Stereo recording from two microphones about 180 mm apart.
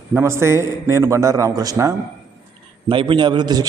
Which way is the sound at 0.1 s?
15° right (ahead or behind).